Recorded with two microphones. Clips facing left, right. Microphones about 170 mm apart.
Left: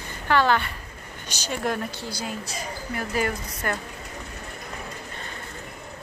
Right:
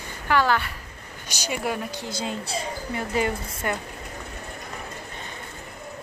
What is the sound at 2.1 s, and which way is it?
A woman's voice, 25° right (ahead or behind).